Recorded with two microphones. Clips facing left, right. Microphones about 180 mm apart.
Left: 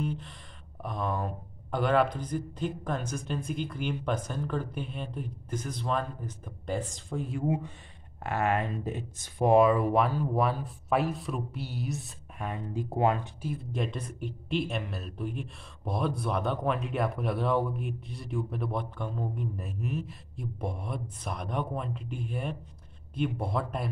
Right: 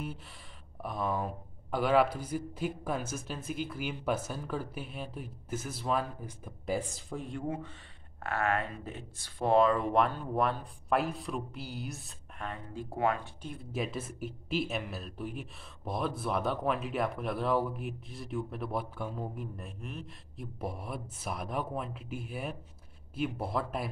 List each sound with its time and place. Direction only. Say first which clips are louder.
0.0 s speech: left 6 dB; 5° right (ahead or behind)
7.4 s speech: left 6 dB; 15° left (ahead or behind)
12.4 s speech: left 5 dB; 15° left (ahead or behind)
13.4 s speech: left 3 dB; centre (ahead or behind)